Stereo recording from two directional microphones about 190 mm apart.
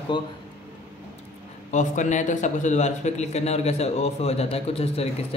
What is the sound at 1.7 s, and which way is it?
A man's voice, 40° left (ahead or behind).